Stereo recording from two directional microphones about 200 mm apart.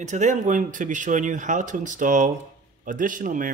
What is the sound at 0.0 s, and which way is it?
Speech, 35° right (ahead or behind).